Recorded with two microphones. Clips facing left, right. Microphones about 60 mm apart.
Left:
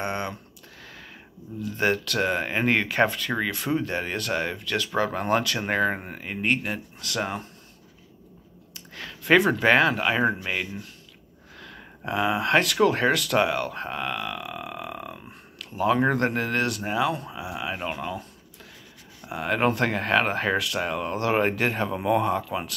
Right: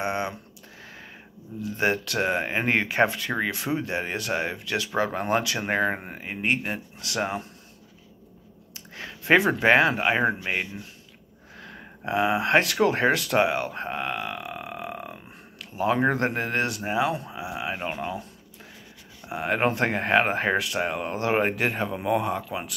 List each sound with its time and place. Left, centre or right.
0.0 s typing: centre
1.6 s speech: right
8.9 s speech: right
11.5 s a sound: right
12.1 s speech: right
19.2 s speech: right
21.5 s speech: centre